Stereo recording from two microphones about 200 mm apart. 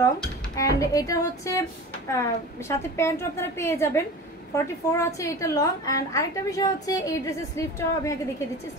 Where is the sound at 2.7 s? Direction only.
15° left (ahead or behind).